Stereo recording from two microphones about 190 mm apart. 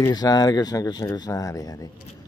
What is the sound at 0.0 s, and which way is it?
Speech, 20° left (ahead or behind).